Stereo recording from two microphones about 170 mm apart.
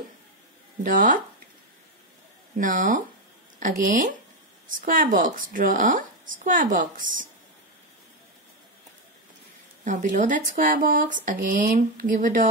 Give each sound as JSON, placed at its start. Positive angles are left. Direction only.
{"t": 0.8, "sound": "a woman's voice", "side_deg": -50}
{"t": 2.5, "sound": "a woman's voice", "side_deg": -50}
{"t": 9.8, "sound": "a woman's voice", "side_deg": -50}